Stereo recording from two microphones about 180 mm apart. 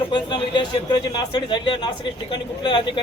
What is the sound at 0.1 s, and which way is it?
A man's voice, 25° left (ahead or behind).